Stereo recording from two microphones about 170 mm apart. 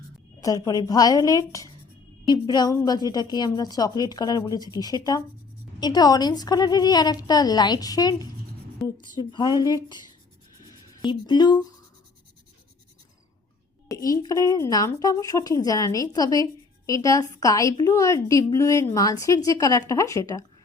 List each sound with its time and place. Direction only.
0.4 s a woman's voice: 20° left (ahead or behind)
11.0 s a woman's voice: 25° left (ahead or behind)
13.8 s a woman's voice: 20° left (ahead or behind)